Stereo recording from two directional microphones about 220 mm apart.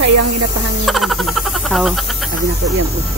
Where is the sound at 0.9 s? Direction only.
Centre (ahead or behind).